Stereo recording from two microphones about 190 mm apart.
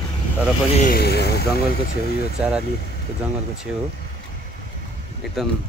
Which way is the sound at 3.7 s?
5° right (ahead or behind).